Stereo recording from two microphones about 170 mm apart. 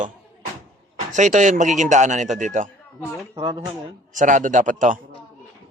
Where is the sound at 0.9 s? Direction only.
45° right (ahead or behind).